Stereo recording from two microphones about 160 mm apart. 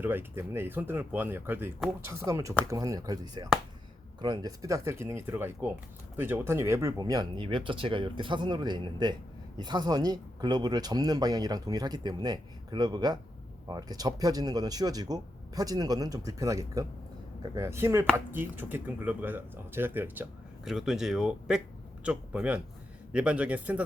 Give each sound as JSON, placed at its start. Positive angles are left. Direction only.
{"t": 0.0, "sound": "speech", "side_deg": -15}
{"t": 20.7, "sound": "speech", "side_deg": 0}